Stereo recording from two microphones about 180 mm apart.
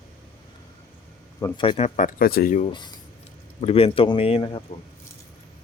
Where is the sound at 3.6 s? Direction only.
30° left (ahead or behind).